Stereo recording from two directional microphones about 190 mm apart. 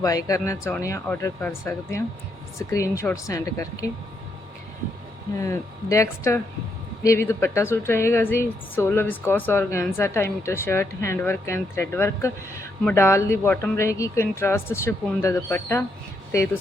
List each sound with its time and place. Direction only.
0.0 s a woman's voice: 20° left (ahead or behind)
5.4 s a woman's voice: 15° left (ahead or behind)